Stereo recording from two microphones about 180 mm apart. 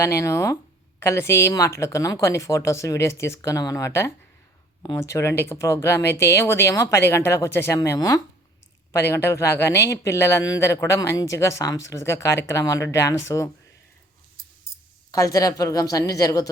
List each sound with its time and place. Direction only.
0.0 s speech: 15° left (ahead or behind)
15.1 s a woman's voice: 20° left (ahead or behind)